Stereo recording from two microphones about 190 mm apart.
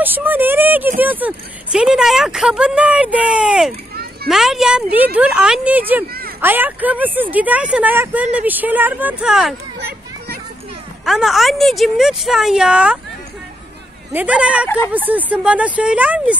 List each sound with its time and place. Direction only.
0.0 s speech: 10° right (ahead or behind)
3.9 s children playing: 55° right (ahead or behind)
4.3 s a woman's voice: centre (ahead or behind)
9.8 s children playing: 55° right (ahead or behind)
11.1 s a woman's voice: centre (ahead or behind)
14.1 s speech: 5° right (ahead or behind)